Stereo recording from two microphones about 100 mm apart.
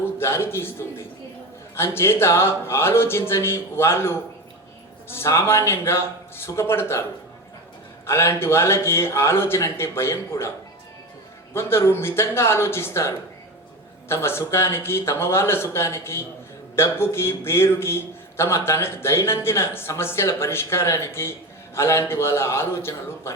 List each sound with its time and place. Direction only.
0.2 s a man's voice: 25° left (ahead or behind)
8.0 s a man's voice: 25° left (ahead or behind)
11.5 s a man's voice: 25° left (ahead or behind)